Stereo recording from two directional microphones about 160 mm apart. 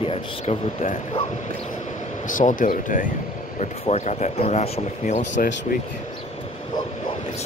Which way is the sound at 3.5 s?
45° left (ahead or behind).